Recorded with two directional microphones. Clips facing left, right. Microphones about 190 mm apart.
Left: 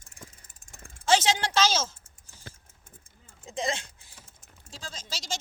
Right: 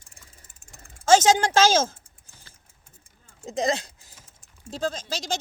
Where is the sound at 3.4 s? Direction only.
40° right (ahead or behind).